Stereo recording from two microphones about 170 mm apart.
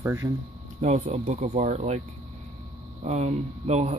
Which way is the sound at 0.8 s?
40° right (ahead or behind).